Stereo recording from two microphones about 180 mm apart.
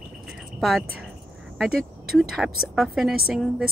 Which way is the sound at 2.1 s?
Centre (ahead or behind).